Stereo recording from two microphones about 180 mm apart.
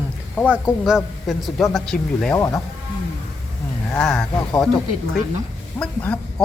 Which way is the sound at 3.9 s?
5° left (ahead or behind).